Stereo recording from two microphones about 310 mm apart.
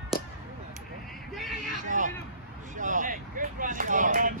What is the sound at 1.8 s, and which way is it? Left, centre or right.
Hubbub, right.